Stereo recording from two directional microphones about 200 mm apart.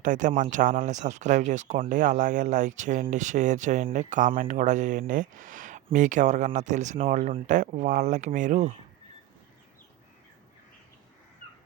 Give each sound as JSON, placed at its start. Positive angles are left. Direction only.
{"t": 0.0, "sound": "speech", "side_deg": -40}